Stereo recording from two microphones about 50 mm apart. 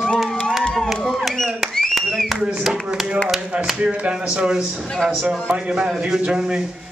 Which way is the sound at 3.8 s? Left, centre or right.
Right.